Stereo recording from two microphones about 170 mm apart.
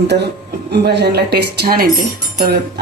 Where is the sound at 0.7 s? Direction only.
75° right (ahead or behind).